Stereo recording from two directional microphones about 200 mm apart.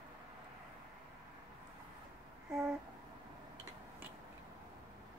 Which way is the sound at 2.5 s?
5° right (ahead or behind).